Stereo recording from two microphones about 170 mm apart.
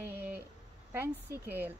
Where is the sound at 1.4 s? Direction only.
10° right (ahead or behind).